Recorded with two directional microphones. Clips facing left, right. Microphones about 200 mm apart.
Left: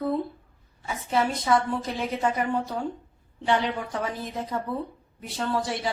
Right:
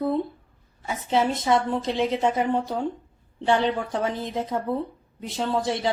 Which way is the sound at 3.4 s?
25° right (ahead or behind).